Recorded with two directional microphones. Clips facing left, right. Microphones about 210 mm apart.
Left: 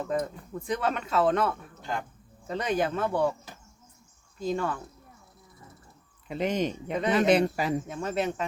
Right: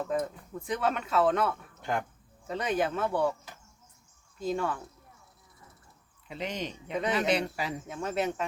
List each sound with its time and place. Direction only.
0.0 s speech: 5° right (ahead or behind)
4.4 s speech: centre (ahead or behind)
6.2 s speech: 50° left (ahead or behind)
7.9 s speech: centre (ahead or behind)